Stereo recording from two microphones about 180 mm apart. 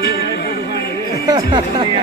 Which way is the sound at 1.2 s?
25° right (ahead or behind).